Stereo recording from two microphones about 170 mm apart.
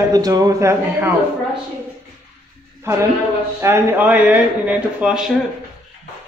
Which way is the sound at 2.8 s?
15° right (ahead or behind).